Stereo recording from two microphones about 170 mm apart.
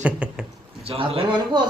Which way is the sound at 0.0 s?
5° right (ahead or behind).